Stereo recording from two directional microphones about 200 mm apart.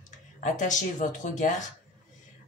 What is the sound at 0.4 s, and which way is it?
A woman's voice, 40° left (ahead or behind).